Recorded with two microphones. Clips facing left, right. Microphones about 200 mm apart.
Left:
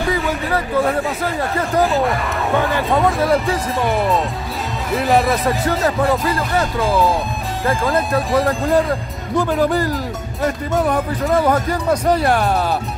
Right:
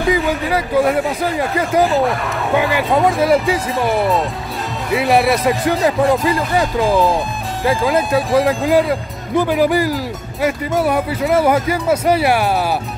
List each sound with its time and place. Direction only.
0.1 s a man's voice: 15° right (ahead or behind)
1.9 s speech: centre (ahead or behind)
6.5 s speech: 15° right (ahead or behind)
8.1 s speech: centre (ahead or behind)